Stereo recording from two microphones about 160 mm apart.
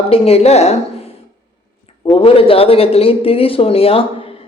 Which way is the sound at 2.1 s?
35° left (ahead or behind).